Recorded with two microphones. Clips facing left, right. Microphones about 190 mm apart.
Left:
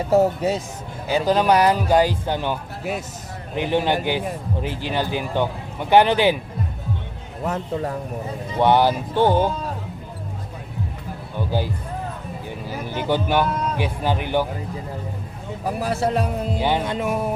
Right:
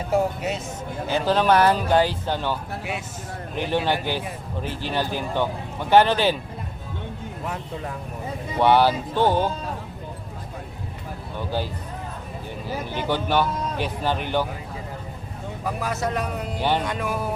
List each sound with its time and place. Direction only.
0.1 s speech: 35° left (ahead or behind)
1.1 s a man's voice: 10° left (ahead or behind)
7.4 s speech: 40° left (ahead or behind)
8.5 s a man's voice: 15° left (ahead or behind)
11.3 s a man's voice: 15° left (ahead or behind)
12.9 s a man's voice: 15° left (ahead or behind)
15.6 s speech: 30° left (ahead or behind)
16.6 s a man's voice: 15° left (ahead or behind)
16.8 s speech: 25° left (ahead or behind)